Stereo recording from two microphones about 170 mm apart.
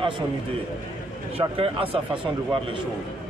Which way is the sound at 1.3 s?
35° right (ahead or behind).